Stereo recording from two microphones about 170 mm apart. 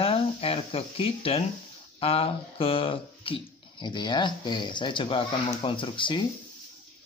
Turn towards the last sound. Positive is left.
turn(degrees=30)  # may be behind; listen again after turning